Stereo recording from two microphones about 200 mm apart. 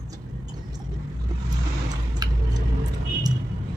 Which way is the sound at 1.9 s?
20° right (ahead or behind).